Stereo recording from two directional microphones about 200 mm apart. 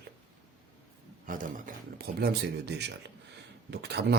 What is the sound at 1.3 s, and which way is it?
Speech, 45° right (ahead or behind).